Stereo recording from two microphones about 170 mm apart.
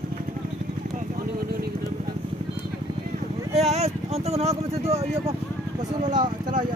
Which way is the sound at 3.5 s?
40° right (ahead or behind).